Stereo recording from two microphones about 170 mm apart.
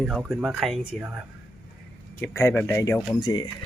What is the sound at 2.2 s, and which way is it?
Speech, 15° left (ahead or behind).